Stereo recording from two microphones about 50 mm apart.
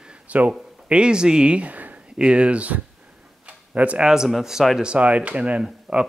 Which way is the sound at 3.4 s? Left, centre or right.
Right.